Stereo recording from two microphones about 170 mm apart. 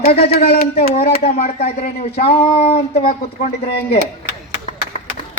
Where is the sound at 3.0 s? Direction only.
60° left (ahead or behind).